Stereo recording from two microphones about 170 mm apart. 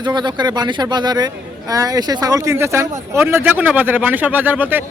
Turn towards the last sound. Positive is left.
turn(degrees=-10)  # may be behind; listen again after turning